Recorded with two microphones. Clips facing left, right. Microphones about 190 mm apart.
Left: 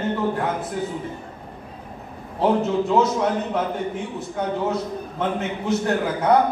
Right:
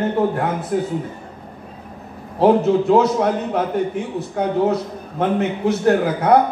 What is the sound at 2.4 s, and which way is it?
A man's voice, 60° right (ahead or behind).